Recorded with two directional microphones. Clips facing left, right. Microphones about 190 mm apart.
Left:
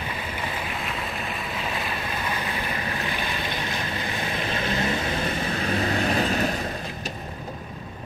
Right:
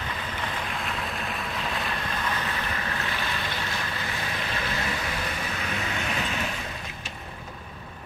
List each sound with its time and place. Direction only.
0.4 s boat: centre (ahead or behind)
1.8 s vehicle: 10° left (ahead or behind)
3.0 s boat: 15° left (ahead or behind)
4.5 s vehicle: 25° left (ahead or behind)